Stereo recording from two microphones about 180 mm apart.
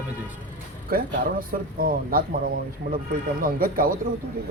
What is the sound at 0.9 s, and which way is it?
Speech, 55° right (ahead or behind).